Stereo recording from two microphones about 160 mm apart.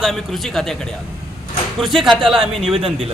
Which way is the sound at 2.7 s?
35° right (ahead or behind).